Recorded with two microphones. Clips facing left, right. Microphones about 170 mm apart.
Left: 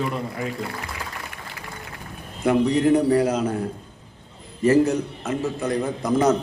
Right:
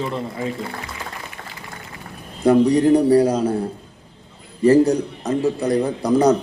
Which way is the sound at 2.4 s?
35° right (ahead or behind).